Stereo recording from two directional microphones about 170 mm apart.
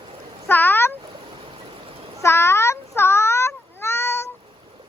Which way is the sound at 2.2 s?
15° left (ahead or behind).